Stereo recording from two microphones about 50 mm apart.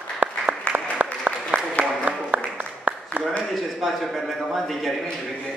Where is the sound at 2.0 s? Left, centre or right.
Right.